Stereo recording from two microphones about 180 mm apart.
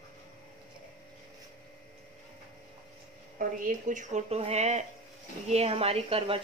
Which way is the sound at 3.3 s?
45° right (ahead or behind).